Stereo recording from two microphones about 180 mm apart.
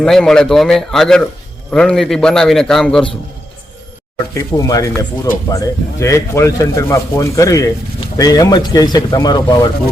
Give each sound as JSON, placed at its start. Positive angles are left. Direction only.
{"t": 0.0, "sound": "a man's voice", "side_deg": 5}
{"t": 4.4, "sound": "speech", "side_deg": 20}